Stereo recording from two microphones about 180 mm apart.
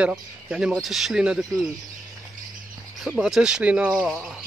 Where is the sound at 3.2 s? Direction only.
5° right (ahead or behind).